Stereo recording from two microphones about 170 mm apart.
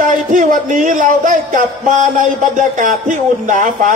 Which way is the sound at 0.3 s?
50° right (ahead or behind).